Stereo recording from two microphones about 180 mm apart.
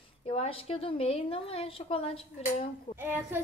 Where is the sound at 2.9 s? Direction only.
10° right (ahead or behind).